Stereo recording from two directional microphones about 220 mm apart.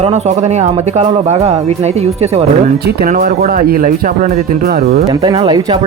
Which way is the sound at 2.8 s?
40° right (ahead or behind).